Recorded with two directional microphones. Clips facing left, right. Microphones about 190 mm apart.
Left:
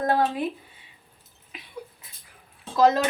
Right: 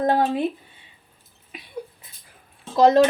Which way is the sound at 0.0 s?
25° right (ahead or behind).